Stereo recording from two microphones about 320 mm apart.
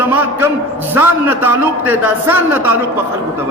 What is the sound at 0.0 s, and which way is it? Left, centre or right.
A man's voice, centre.